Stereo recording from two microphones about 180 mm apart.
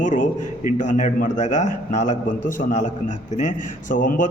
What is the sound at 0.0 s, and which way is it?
A man's voice, 45° left (ahead or behind).